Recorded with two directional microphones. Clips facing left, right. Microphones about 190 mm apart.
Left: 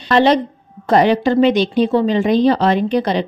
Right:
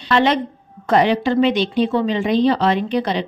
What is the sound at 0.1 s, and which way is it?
A woman's voice, 35° left (ahead or behind).